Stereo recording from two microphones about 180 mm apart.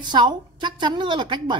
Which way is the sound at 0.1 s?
25° right (ahead or behind).